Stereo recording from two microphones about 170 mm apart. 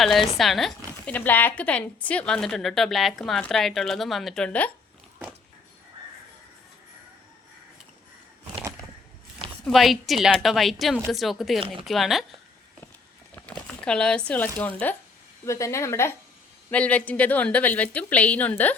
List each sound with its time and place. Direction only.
0.0 s a woman's voice: centre (ahead or behind)
9.6 s a woman's voice: centre (ahead or behind)
13.8 s speech: 5° left (ahead or behind)